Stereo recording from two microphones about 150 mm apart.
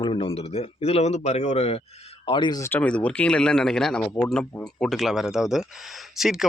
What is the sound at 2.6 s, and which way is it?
A man's voice, 15° left (ahead or behind).